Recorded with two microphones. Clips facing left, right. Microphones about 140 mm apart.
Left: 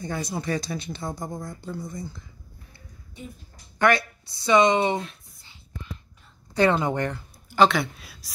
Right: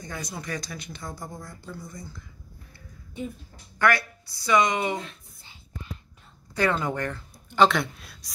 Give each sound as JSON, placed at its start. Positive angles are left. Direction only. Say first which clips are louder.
{"t": 0.0, "sound": "speech", "louder": "left 6 dB", "side_deg": 30}
{"t": 3.8, "sound": "speech", "louder": "left 2 dB", "side_deg": 25}
{"t": 6.5, "sound": "speech", "louder": "left 4 dB", "side_deg": 25}
{"t": 7.4, "sound": "a woman's voice", "louder": "left 1 dB", "side_deg": 0}